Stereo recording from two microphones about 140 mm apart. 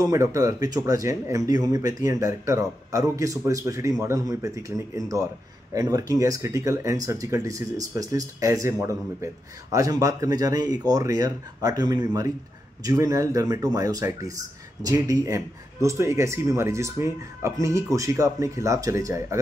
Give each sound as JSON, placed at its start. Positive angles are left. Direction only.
{"t": 0.0, "sound": "speech", "side_deg": -25}